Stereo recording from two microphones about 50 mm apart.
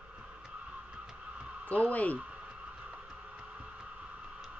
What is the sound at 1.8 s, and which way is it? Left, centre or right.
Speech, left.